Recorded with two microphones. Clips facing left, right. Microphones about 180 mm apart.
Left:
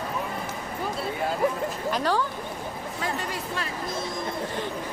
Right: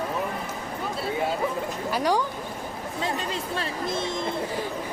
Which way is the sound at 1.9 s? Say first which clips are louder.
Right 3 dB; 15° right (ahead or behind).